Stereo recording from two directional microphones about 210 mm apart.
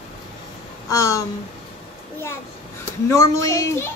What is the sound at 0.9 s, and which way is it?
Speech, 15° left (ahead or behind).